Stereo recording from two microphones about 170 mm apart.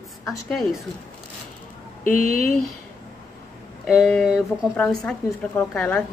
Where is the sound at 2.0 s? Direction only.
55° left (ahead or behind).